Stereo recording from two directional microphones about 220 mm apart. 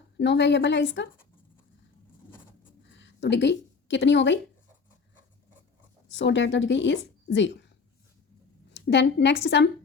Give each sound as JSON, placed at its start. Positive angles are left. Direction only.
{"t": 0.2, "sound": "a woman's voice", "side_deg": 50}
{"t": 2.9, "sound": "a woman's voice", "side_deg": 55}
{"t": 6.1, "sound": "a woman's voice", "side_deg": 55}
{"t": 8.7, "sound": "a woman's voice", "side_deg": 55}